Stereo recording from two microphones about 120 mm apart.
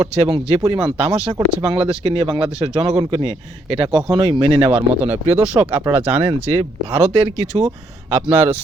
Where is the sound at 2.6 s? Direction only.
40° right (ahead or behind).